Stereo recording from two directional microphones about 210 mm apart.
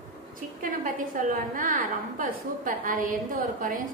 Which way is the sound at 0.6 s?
40° right (ahead or behind).